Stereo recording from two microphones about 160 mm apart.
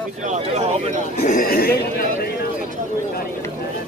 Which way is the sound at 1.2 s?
55° left (ahead or behind).